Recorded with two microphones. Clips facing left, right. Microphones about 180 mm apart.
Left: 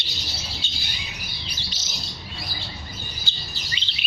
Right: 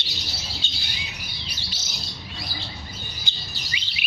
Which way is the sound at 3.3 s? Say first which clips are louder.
Even; 15° right (ahead or behind).